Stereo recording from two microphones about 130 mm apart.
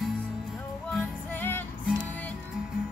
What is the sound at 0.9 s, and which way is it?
Music, 15° left (ahead or behind).